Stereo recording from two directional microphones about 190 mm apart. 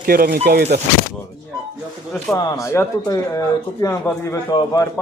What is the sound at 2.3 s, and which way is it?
Speech, 15° left (ahead or behind).